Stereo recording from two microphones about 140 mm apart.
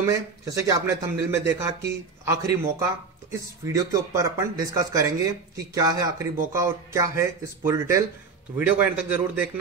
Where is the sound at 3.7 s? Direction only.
25° right (ahead or behind).